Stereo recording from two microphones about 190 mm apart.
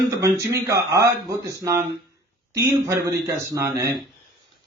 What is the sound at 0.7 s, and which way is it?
Speech, 15° right (ahead or behind).